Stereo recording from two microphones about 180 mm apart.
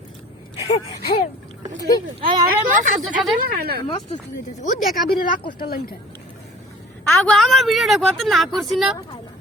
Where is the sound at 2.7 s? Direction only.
45° right (ahead or behind).